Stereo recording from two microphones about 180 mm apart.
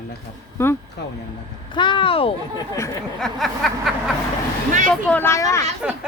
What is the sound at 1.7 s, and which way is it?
Speech, 25° left (ahead or behind).